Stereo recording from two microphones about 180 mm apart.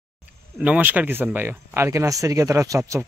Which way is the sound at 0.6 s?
10° right (ahead or behind).